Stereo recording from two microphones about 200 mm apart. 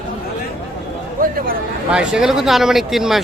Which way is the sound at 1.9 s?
5° right (ahead or behind).